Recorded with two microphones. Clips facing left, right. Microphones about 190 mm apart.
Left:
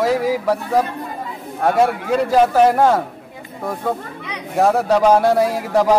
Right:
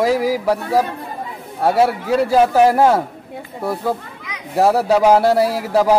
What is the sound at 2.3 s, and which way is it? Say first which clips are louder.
Speech: even; 5° right (ahead or behind).